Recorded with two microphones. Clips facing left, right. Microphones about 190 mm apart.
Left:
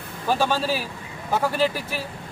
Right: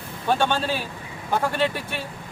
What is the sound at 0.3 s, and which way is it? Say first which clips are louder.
Speech: even; centre (ahead or behind).